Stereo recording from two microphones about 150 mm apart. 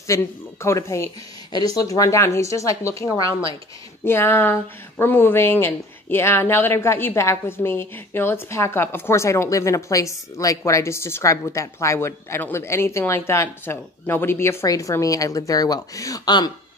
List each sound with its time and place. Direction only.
0.0 s speech: 20° left (ahead or behind)